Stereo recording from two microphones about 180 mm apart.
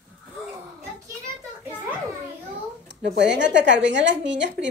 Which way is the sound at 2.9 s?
75° right (ahead or behind).